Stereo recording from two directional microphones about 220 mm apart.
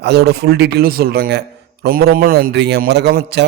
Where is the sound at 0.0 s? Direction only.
50° right (ahead or behind).